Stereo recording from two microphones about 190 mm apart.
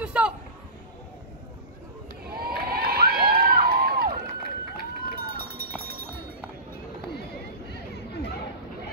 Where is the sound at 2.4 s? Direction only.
55° right (ahead or behind).